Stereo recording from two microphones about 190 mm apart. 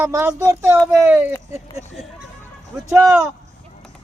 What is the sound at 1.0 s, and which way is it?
Speech, 10° right (ahead or behind).